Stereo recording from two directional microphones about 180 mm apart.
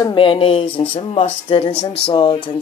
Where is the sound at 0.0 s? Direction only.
30° left (ahead or behind).